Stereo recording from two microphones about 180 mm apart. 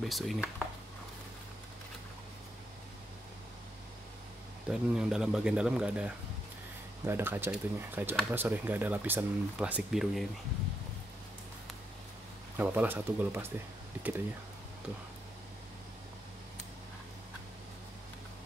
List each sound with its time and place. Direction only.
0.0 s speech: centre (ahead or behind)
4.6 s speech: 5° right (ahead or behind)
12.5 s speech: 10° right (ahead or behind)